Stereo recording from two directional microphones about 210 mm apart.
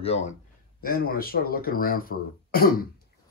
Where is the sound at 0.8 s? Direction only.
45° left (ahead or behind).